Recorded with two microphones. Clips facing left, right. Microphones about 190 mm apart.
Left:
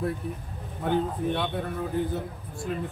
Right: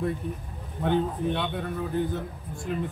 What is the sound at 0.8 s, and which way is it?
Speech, 5° left (ahead or behind).